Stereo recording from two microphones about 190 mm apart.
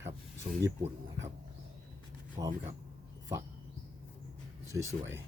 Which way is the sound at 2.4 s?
25° right (ahead or behind).